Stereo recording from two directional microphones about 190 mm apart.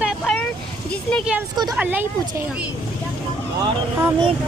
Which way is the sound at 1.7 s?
10° right (ahead or behind).